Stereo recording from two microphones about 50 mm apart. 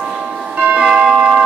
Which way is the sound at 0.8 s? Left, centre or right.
Centre.